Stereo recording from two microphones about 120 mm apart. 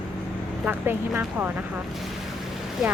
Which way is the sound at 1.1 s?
15° right (ahead or behind).